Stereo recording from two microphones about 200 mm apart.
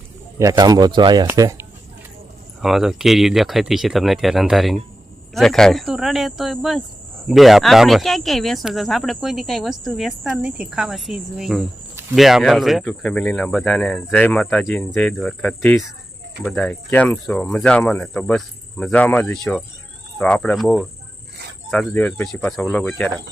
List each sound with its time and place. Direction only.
0.3 s speech: 20° right (ahead or behind)
2.6 s speech: centre (ahead or behind)